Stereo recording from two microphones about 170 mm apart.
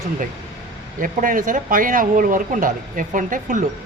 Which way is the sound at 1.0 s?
55° right (ahead or behind).